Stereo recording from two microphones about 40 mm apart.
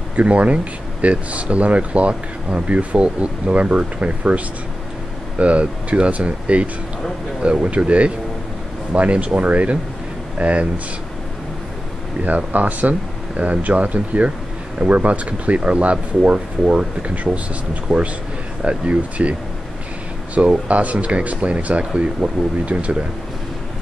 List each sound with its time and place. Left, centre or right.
0.1 s speech: right
5.4 s speech: right
12.3 s speech: right
20.3 s speech: right